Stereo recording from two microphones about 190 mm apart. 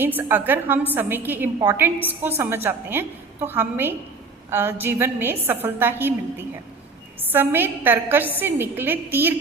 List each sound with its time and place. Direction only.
0.0 s a woman's voice: 10° right (ahead or behind)
7.2 s a woman's voice: 10° right (ahead or behind)